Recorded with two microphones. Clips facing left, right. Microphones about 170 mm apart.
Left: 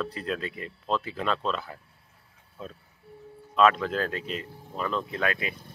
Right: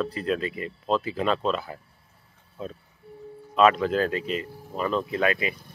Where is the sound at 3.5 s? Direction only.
5° right (ahead or behind).